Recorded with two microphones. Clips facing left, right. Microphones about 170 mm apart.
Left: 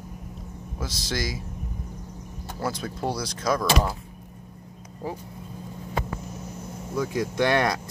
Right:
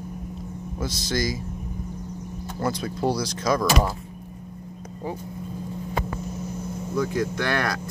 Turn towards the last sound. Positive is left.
turn(degrees=20)  # may be behind; listen again after turning